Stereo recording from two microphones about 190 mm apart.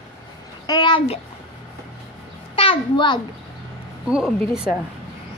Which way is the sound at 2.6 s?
25° left (ahead or behind).